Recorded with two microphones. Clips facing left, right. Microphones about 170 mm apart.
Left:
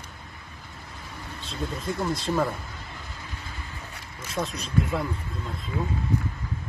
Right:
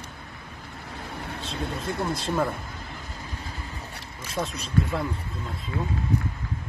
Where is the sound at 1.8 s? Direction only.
65° right (ahead or behind).